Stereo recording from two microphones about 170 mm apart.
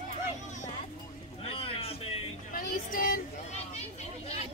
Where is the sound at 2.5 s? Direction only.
55° left (ahead or behind).